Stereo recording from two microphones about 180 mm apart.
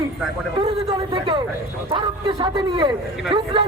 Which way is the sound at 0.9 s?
30° right (ahead or behind).